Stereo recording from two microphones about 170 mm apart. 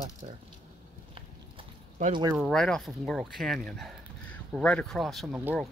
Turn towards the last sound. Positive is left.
turn(degrees=0)  # may be behind; listen again after turning